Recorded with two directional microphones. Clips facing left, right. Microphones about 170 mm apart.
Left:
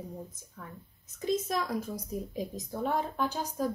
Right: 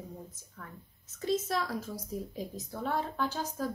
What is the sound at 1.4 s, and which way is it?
A woman's voice, 15° left (ahead or behind).